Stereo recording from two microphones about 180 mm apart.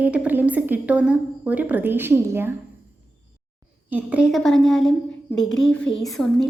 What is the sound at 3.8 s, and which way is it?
A woman's voice, 10° right (ahead or behind).